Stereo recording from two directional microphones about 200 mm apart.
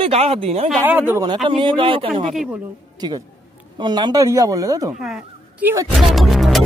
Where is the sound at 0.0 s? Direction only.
30° right (ahead or behind).